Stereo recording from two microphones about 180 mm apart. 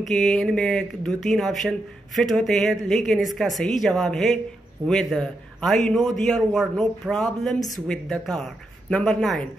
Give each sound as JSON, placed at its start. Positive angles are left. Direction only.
{"t": 0.0, "sound": "speech", "side_deg": 0}
{"t": 4.8, "sound": "a man's voice", "side_deg": -25}
{"t": 5.1, "sound": "a man's voice", "side_deg": 5}